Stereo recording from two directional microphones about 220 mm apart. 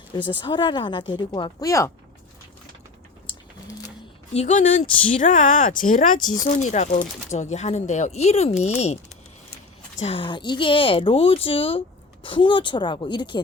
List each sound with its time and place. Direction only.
0.3 s speech: 20° left (ahead or behind)
3.2 s a sound: 15° left (ahead or behind)
4.4 s speech: 30° left (ahead or behind)
10.0 s speech: 25° left (ahead or behind)